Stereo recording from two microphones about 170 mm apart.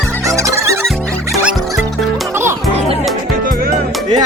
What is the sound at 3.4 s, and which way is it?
Music, 55° right (ahead or behind).